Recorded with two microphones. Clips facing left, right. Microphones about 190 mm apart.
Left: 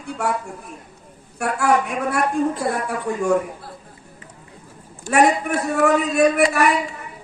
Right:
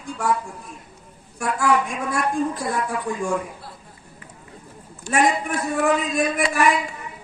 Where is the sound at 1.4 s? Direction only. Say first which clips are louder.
Left 2 dB; 65° left (ahead or behind).